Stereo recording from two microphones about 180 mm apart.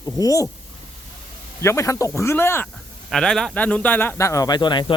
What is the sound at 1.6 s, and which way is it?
Speech, 15° left (ahead or behind).